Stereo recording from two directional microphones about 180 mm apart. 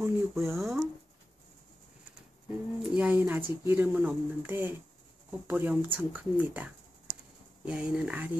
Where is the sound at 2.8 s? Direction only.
10° right (ahead or behind).